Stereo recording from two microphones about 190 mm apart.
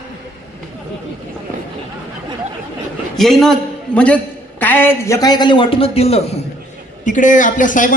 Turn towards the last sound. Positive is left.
turn(degrees=45)  # may be behind; listen again after turning